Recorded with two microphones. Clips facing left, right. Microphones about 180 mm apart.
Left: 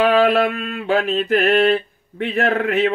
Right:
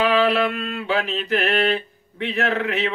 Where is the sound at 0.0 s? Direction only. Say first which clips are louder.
Left 4 dB; 50° left (ahead or behind).